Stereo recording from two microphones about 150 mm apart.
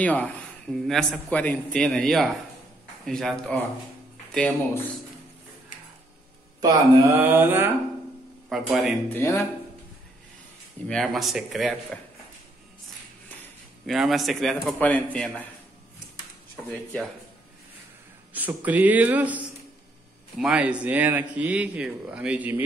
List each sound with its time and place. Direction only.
0.0 s a man's voice: 10° left (ahead or behind)
6.6 s mantra: 25° right (ahead or behind)
7.2 s speech: 15° right (ahead or behind)
8.5 s a man's voice: centre (ahead or behind)
9.1 s music: 15° left (ahead or behind)
10.9 s a man's voice: centre (ahead or behind)
13.8 s a man's voice: centre (ahead or behind)
16.5 s a man's voice: 5° left (ahead or behind)
18.3 s speech: 10° right (ahead or behind)